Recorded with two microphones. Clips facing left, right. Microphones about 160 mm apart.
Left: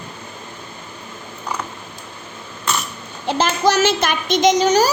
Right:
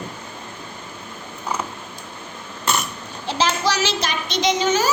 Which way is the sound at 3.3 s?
50° left (ahead or behind).